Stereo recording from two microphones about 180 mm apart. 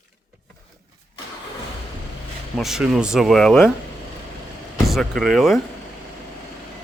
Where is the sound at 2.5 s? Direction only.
Centre (ahead or behind).